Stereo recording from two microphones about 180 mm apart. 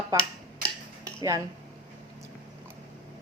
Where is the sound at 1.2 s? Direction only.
20° right (ahead or behind).